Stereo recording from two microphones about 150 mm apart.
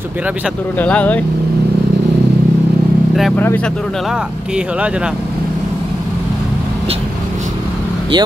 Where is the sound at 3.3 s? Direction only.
10° left (ahead or behind); by 5.1 s 5° right (ahead or behind).